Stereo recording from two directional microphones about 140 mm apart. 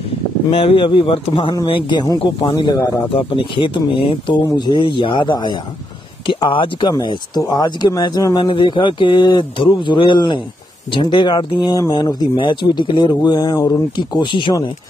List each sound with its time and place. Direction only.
0.5 s speech: 40° left (ahead or behind)
1.5 s speech: 30° left (ahead or behind)
3.2 s speech: 40° left (ahead or behind)
8.5 s speech: 35° left (ahead or behind)